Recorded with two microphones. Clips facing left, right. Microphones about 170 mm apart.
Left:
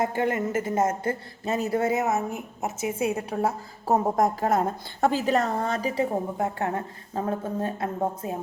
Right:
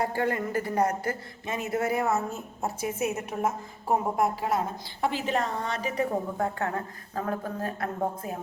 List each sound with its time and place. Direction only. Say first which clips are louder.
0.0 s a woman's voice: left 2 dB; 20° left (ahead or behind)
1.5 s a woman's voice: left 4 dB; 35° left (ahead or behind)